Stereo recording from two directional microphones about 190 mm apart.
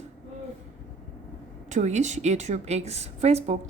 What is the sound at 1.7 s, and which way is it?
A woman's voice, 40° right (ahead or behind).